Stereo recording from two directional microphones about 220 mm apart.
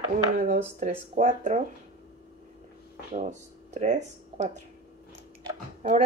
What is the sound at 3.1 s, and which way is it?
Speech, 30° right (ahead or behind).